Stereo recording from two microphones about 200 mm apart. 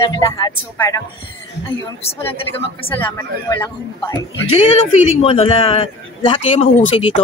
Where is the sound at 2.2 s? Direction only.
10° left (ahead or behind).